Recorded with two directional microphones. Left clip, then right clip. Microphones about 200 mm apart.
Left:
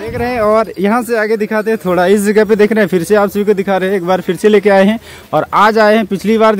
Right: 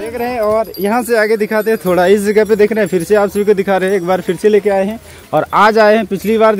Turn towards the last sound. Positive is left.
turn(degrees=5)  # may be behind; listen again after turning